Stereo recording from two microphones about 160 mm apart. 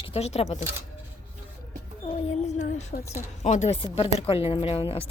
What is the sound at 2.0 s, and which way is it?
Child singing, 40° left (ahead or behind).